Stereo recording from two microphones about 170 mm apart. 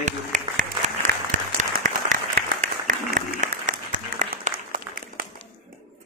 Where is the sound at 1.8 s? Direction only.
50° right (ahead or behind).